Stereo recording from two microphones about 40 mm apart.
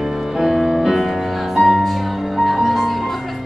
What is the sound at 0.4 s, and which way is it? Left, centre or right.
Music, centre.